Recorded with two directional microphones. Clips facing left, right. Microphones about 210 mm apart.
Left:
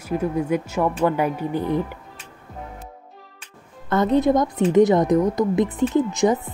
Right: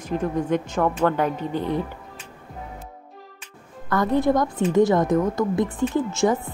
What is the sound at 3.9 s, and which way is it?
A woman's voice, 20° left (ahead or behind).